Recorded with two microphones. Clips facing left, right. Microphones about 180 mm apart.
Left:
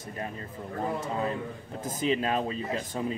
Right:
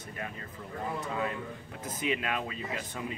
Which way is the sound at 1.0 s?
35° left (ahead or behind).